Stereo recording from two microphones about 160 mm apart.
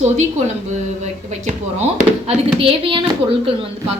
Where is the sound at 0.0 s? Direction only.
45° right (ahead or behind).